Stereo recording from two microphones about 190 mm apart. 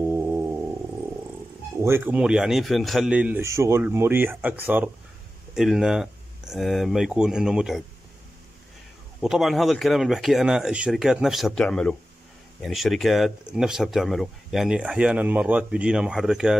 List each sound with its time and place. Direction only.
0.1 s a sound: 10° right (ahead or behind)
1.8 s a man's voice: 10° right (ahead or behind)
9.2 s speech: centre (ahead or behind)